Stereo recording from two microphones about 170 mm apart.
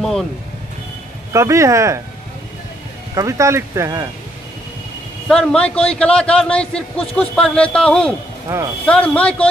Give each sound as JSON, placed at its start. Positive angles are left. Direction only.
{"t": 0.0, "sound": "a man's voice", "side_deg": 0}
{"t": 1.3, "sound": "speech", "side_deg": -15}
{"t": 3.2, "sound": "speech", "side_deg": -15}
{"t": 5.3, "sound": "a man's voice", "side_deg": 5}
{"t": 8.5, "sound": "speech", "side_deg": -15}
{"t": 8.8, "sound": "speech", "side_deg": 10}